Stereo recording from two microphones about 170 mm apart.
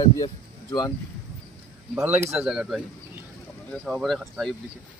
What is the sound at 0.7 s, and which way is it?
Speech, 25° left (ahead or behind).